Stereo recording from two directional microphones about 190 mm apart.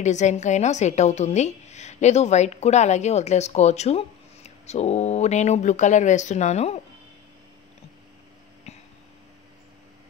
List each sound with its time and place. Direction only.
0.0 s a woman's voice: 40° left (ahead or behind)
8.7 s vehicle: 35° left (ahead or behind)